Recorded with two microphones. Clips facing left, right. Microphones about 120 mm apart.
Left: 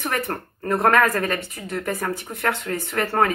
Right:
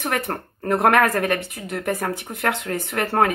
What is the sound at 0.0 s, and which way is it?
A woman's voice, 20° right (ahead or behind).